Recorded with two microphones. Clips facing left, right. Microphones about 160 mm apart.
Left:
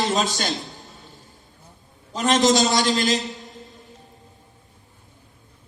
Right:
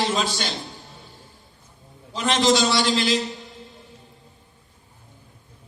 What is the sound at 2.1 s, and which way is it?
A man's voice, 45° left (ahead or behind).